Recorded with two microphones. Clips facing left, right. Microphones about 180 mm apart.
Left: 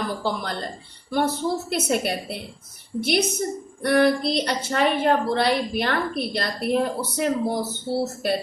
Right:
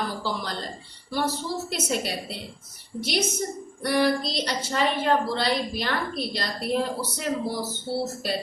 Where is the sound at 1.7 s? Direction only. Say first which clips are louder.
Left 5 dB; 55° left (ahead or behind).